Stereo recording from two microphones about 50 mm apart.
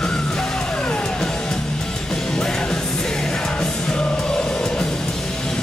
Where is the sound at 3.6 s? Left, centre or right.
Centre.